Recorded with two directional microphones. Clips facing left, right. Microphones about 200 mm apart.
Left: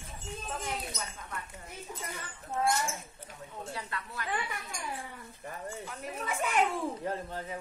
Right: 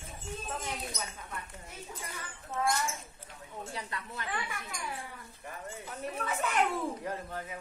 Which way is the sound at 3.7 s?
20° right (ahead or behind).